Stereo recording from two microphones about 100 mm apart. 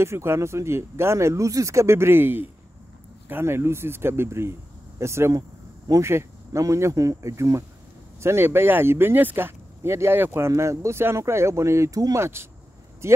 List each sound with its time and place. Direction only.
0.0 s speech: 25° right (ahead or behind)